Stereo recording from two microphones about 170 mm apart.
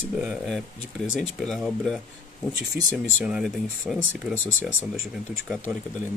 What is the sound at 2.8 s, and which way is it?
Speech, 10° right (ahead or behind).